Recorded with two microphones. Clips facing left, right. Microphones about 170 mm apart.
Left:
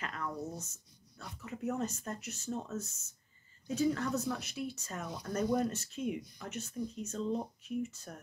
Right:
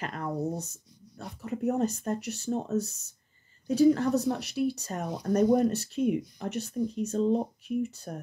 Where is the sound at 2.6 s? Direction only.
35° right (ahead or behind).